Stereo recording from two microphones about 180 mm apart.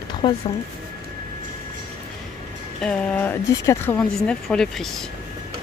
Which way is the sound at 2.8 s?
5° left (ahead or behind).